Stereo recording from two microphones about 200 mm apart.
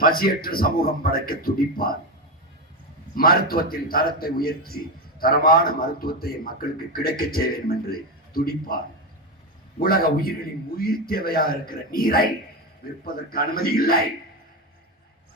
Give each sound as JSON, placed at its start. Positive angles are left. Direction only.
{"t": 0.0, "sound": "a man's voice", "side_deg": 45}
{"t": 3.2, "sound": "a man's voice", "side_deg": 50}
{"t": 13.3, "sound": "a man's voice", "side_deg": 50}